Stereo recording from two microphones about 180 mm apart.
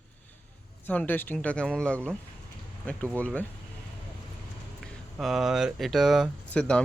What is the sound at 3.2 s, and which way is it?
Speech, 10° left (ahead or behind).